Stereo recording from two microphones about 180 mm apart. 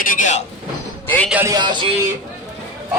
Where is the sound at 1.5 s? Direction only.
25° right (ahead or behind).